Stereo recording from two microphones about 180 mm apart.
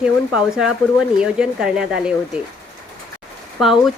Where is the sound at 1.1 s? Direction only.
5° right (ahead or behind).